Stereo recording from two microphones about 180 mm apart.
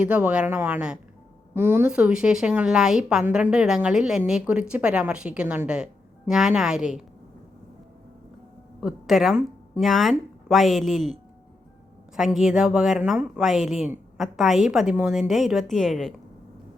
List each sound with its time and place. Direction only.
0.0 s a woman's voice: 5° right (ahead or behind)
8.8 s a woman's voice: centre (ahead or behind)